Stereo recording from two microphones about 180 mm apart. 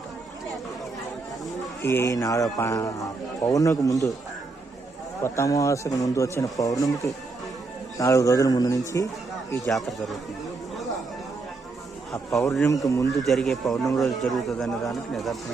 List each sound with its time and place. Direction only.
1.8 s a man's voice: 15° left (ahead or behind)
5.2 s a man's voice: 15° left (ahead or behind)
9.6 s speech: centre (ahead or behind)
12.1 s speech: centre (ahead or behind)
12.6 s a man's voice: 20° left (ahead or behind)
13.1 s speech: centre (ahead or behind)